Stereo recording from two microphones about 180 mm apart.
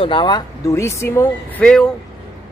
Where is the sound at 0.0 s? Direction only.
25° left (ahead or behind).